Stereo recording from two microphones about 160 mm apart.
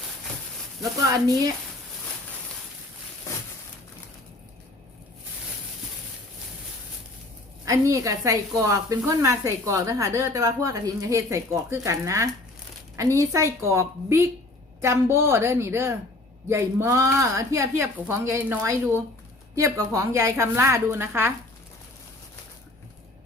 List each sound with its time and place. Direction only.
7.6 s a woman's voice: 20° right (ahead or behind)